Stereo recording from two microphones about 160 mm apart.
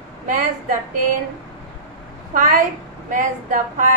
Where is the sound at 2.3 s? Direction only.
60° right (ahead or behind).